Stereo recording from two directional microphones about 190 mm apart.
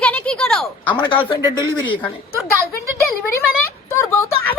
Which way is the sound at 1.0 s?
25° left (ahead or behind).